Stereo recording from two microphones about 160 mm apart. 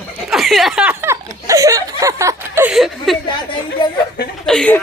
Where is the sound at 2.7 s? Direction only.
Centre (ahead or behind).